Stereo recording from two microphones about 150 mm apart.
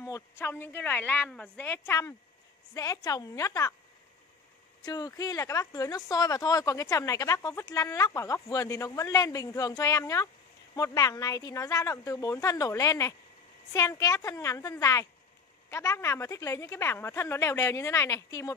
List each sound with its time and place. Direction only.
0.0 s a woman's voice: 20° left (ahead or behind)
4.8 s speech: 25° left (ahead or behind)